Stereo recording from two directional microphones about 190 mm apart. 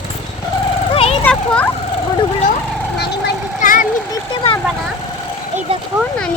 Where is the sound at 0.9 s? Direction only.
30° left (ahead or behind).